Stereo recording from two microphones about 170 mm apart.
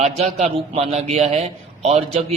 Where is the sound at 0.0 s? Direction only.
40° right (ahead or behind).